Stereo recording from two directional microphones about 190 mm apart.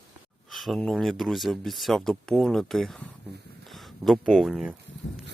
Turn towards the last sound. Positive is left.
turn(degrees=0)  # may be behind; listen again after turning